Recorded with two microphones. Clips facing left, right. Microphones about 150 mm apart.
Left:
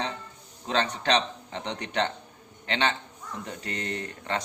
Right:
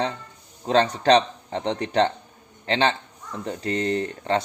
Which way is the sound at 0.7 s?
35° right (ahead or behind).